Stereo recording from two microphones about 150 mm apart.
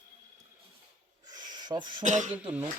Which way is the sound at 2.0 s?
55° right (ahead or behind).